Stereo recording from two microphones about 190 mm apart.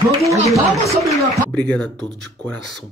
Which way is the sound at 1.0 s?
5° left (ahead or behind).